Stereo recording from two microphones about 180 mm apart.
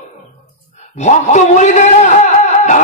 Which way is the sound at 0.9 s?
40° left (ahead or behind).